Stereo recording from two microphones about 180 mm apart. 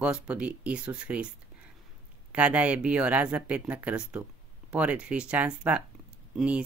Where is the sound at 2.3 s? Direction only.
10° right (ahead or behind).